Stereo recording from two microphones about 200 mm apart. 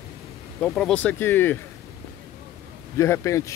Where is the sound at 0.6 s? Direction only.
5° left (ahead or behind).